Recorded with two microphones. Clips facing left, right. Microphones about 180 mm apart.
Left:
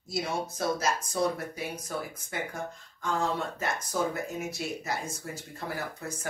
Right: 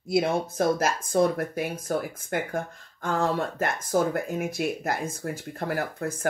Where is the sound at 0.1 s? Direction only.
55° right (ahead or behind).